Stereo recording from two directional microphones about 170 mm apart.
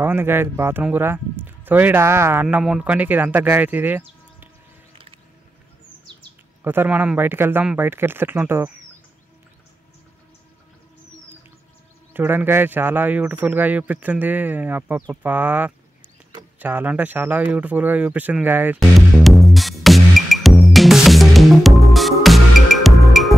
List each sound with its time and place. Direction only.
0.0 s speech: 15° right (ahead or behind)
2.4 s speech: 5° right (ahead or behind)
6.6 s speech: 10° right (ahead or behind)
12.1 s speech: 10° right (ahead or behind)
18.9 s music: centre (ahead or behind)